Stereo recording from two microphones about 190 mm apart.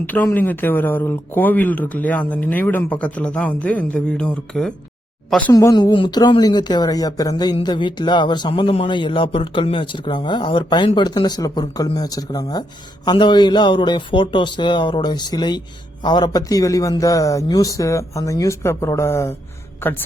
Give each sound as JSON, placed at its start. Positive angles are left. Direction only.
{"t": 0.0, "sound": "speech", "side_deg": 10}
{"t": 5.5, "sound": "speech", "side_deg": 15}